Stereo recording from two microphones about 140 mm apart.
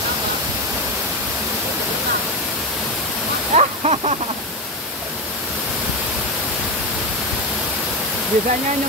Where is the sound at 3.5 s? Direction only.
50° right (ahead or behind).